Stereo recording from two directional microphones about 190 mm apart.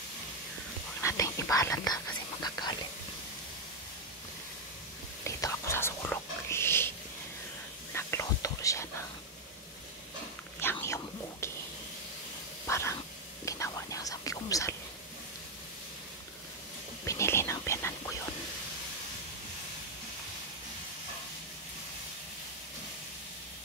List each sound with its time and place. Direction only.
1.0 s whispering: 15° left (ahead or behind)
5.2 s whispering: 15° left (ahead or behind)
7.9 s whispering: 15° left (ahead or behind)
10.6 s a sound: 10° left (ahead or behind)
12.6 s a sound: 15° left (ahead or behind)
13.5 s whispering: 15° left (ahead or behind)
17.0 s whispering: 15° left (ahead or behind)